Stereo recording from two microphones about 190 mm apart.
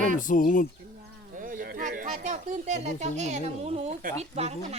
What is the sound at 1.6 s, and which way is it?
Speech, 45° right (ahead or behind).